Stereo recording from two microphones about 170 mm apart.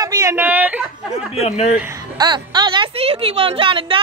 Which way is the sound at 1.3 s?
40° left (ahead or behind).